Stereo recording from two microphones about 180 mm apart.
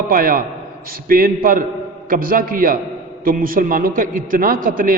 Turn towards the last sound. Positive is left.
turn(degrees=-50)  # may be behind; listen again after turning